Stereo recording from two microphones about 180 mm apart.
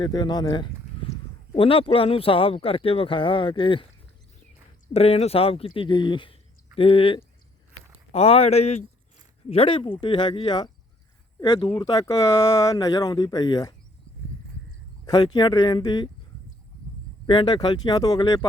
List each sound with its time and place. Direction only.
0.0 s speech: 25° left (ahead or behind)
4.9 s speech: 35° left (ahead or behind)
15.0 s speech: 25° left (ahead or behind)
17.2 s speech: 25° left (ahead or behind)